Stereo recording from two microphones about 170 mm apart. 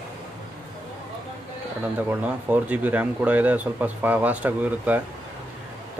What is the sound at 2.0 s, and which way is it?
Speech, 10° right (ahead or behind).